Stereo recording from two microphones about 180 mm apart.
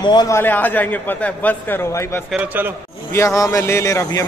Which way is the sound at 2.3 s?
10° right (ahead or behind).